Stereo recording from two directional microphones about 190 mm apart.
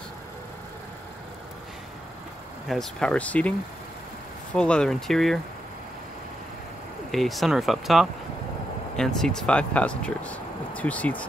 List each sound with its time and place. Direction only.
2.7 s speech: 5° left (ahead or behind)
4.6 s speech: 5° left (ahead or behind)
7.1 s speech: centre (ahead or behind)